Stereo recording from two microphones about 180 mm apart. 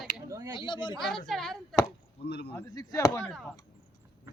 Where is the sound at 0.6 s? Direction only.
25° left (ahead or behind).